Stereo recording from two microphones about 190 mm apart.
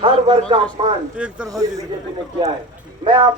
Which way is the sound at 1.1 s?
5° right (ahead or behind).